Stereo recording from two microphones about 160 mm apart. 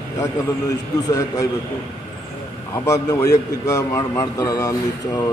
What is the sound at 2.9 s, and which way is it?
Speech, 20° left (ahead or behind).